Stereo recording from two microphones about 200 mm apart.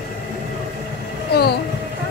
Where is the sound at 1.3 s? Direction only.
55° left (ahead or behind).